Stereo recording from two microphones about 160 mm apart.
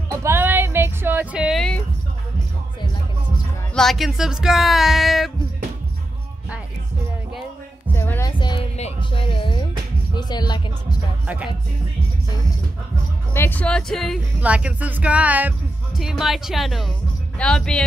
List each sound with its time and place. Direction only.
0.1 s music: 15° right (ahead or behind); by 1.8 s centre (ahead or behind)
3.7 s speech: centre (ahead or behind)
7.9 s music: 15° left (ahead or behind)
8.3 s music: 30° left (ahead or behind)
11.2 s speech: 10° right (ahead or behind)
13.3 s speech: 15° left (ahead or behind)
14.4 s speech: 10° right (ahead or behind)